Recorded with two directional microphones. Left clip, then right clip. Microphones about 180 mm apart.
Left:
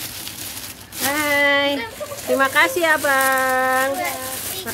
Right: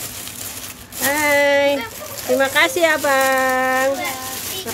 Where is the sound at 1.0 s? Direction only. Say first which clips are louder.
Right 2 dB; 10° right (ahead or behind).